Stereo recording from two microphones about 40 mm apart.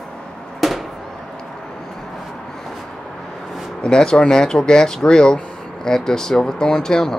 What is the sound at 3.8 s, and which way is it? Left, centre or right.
Speech, centre.